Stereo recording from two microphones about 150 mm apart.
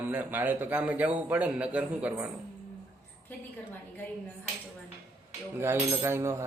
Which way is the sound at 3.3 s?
10° left (ahead or behind).